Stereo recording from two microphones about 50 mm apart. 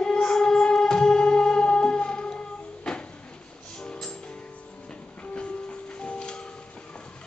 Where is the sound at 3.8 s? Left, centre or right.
Centre.